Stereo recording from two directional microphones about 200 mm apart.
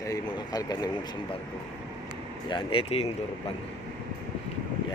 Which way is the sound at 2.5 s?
25° left (ahead or behind).